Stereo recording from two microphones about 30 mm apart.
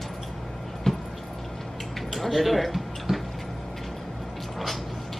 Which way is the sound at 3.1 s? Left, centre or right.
Centre.